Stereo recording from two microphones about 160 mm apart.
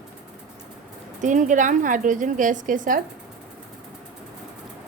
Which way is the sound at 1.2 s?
50° right (ahead or behind).